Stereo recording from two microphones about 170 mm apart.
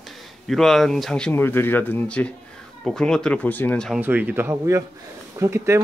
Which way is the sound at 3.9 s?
10° right (ahead or behind).